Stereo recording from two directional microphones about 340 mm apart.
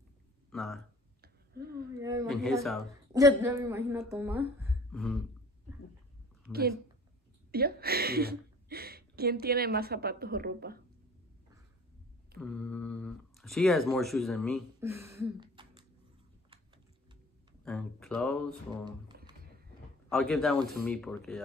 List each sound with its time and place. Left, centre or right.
0.5 s speech: centre
1.2 s a sound: right
2.0 s a woman's voice: centre
2.8 s a woman's voice: centre
6.5 s speech: centre
7.5 s a woman's voice: right
12.4 s speech: centre
17.6 s speech: centre
20.1 s speech: centre